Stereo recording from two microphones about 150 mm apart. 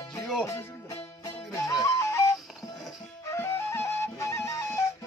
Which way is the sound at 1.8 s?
20° left (ahead or behind).